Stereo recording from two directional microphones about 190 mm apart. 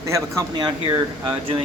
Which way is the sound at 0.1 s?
15° right (ahead or behind).